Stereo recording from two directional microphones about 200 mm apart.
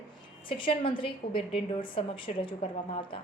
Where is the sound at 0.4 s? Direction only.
25° left (ahead or behind).